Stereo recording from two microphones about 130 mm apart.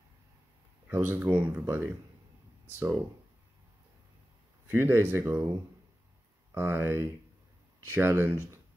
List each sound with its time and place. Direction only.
0.8 s speech: 15° right (ahead or behind)
4.6 s speech: 20° right (ahead or behind)
6.5 s speech: 20° right (ahead or behind)